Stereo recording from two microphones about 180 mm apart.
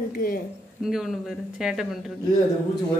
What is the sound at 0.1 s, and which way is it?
Speech, 55° left (ahead or behind).